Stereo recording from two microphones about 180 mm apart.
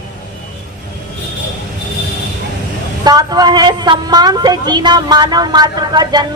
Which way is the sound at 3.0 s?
25° right (ahead or behind).